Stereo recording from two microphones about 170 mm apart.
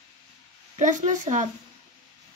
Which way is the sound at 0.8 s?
45° right (ahead or behind).